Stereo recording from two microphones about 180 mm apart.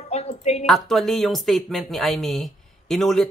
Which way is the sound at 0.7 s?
Centre (ahead or behind).